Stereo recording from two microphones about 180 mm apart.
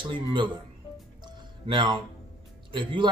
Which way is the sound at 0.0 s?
25° right (ahead or behind).